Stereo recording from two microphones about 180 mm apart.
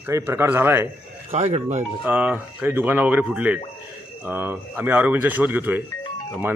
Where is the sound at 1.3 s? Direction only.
35° right (ahead or behind).